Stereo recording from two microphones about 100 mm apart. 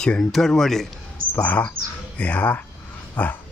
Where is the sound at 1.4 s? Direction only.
15° left (ahead or behind).